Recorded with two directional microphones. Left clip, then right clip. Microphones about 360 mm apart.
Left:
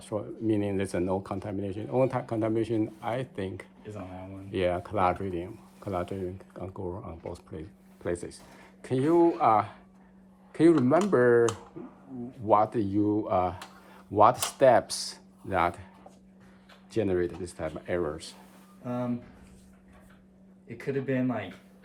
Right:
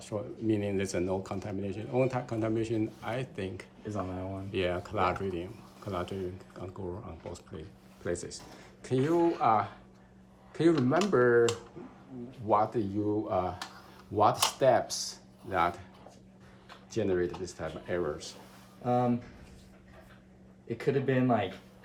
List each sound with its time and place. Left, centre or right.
0.0 s speech: centre
12.5 s speech: left
16.9 s speech: left
20.7 s speech: centre